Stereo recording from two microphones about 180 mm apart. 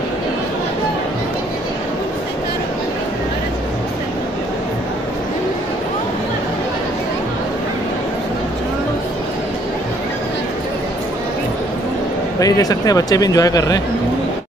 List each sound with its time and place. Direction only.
12.4 s speech: 20° left (ahead or behind)